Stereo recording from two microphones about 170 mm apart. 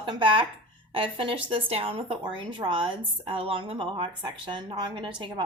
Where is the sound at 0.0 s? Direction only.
30° right (ahead or behind).